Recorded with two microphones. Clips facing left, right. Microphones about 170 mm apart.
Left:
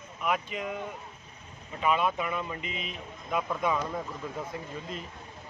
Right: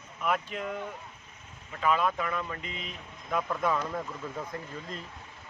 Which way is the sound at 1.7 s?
20° left (ahead or behind).